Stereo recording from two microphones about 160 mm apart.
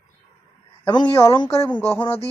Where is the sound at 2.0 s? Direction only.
35° left (ahead or behind).